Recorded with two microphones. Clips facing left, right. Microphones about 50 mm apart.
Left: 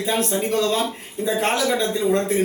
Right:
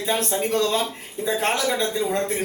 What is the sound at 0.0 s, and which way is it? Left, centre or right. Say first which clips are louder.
A man's voice: left 1 dB; centre.